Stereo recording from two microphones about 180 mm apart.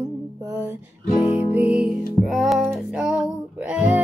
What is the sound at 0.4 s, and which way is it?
Music, 15° right (ahead or behind).